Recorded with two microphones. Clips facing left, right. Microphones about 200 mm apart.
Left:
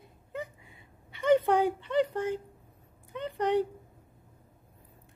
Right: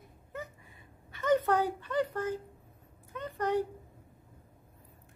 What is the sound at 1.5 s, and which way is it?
Speech, 20° left (ahead or behind).